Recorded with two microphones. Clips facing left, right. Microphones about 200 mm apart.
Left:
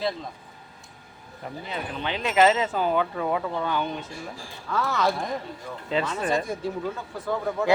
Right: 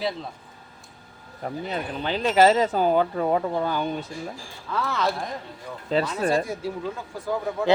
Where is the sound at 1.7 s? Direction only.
35° right (ahead or behind).